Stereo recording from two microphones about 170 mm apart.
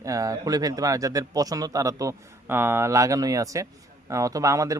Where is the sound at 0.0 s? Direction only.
20° right (ahead or behind).